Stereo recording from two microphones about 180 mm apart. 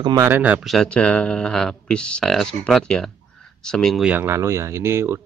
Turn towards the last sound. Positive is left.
turn(degrees=-15)  # may be behind; listen again after turning